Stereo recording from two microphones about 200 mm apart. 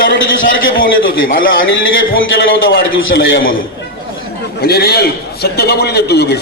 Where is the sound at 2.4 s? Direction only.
55° left (ahead or behind).